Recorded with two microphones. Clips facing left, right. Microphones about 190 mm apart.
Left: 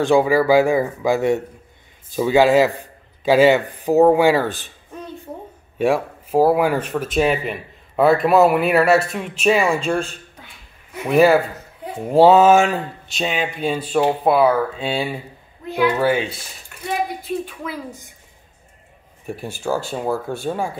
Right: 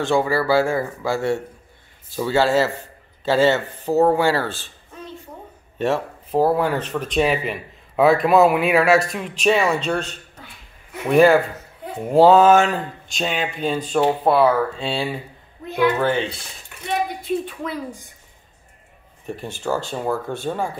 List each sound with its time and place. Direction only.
0.0 s speech: 15° left (ahead or behind)
5.8 s speech: 10° left (ahead or behind)
19.2 s speech: 10° left (ahead or behind)